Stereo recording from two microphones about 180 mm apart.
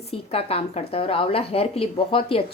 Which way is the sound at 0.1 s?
35° left (ahead or behind).